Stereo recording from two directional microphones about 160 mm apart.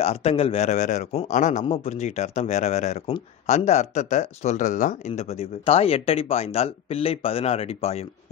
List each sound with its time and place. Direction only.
0.0 s a man's voice: 40° left (ahead or behind)